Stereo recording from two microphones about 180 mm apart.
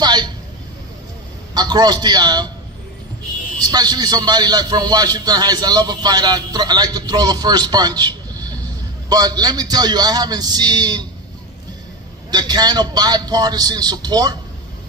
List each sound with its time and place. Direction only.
0.0 s speech: 25° right (ahead or behind)
1.5 s a man's voice: 25° right (ahead or behind)
3.6 s a man's voice: 20° right (ahead or behind)
12.3 s a man's voice: 25° right (ahead or behind)